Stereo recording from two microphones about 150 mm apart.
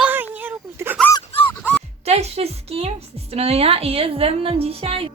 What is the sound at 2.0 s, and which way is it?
A woman's voice, 45° right (ahead or behind).